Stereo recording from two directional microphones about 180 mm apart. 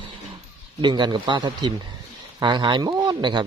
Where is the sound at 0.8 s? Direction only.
25° right (ahead or behind).